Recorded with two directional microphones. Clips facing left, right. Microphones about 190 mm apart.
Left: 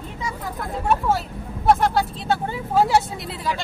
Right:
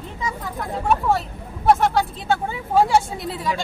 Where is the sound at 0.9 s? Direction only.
Centre (ahead or behind).